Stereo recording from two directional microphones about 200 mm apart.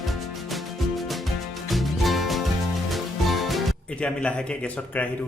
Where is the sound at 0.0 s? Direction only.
Centre (ahead or behind).